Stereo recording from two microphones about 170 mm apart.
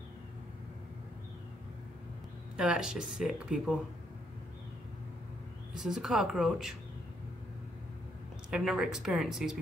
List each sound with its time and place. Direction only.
2.5 s speech: 5° right (ahead or behind)
5.8 s speech: 5° right (ahead or behind)
8.5 s speech: 5° right (ahead or behind)